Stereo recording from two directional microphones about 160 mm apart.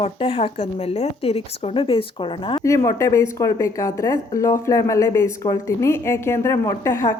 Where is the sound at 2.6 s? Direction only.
20° left (ahead or behind).